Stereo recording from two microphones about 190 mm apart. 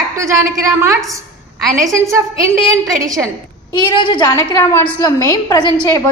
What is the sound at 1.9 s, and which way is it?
A woman's voice, 15° right (ahead or behind).